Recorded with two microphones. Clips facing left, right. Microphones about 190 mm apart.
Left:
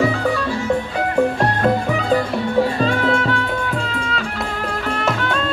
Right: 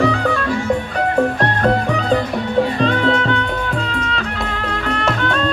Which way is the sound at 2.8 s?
10° left (ahead or behind).